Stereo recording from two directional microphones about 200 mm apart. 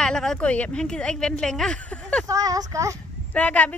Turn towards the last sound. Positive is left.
turn(degrees=5)  # may be behind; listen again after turning